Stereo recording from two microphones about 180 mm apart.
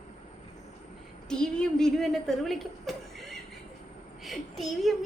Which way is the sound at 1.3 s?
5° left (ahead or behind).